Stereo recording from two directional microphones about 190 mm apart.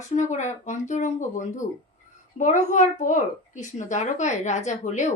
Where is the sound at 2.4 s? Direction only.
40° left (ahead or behind).